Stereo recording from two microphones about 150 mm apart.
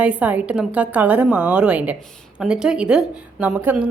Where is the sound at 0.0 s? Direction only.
10° right (ahead or behind).